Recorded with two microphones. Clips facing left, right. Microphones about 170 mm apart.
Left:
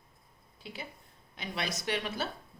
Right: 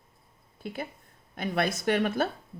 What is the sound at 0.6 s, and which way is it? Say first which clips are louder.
A woman's voice: right 8 dB; 50° right (ahead or behind).